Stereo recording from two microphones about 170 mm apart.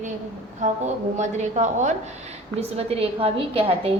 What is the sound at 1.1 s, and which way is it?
A woman's voice, 45° right (ahead or behind).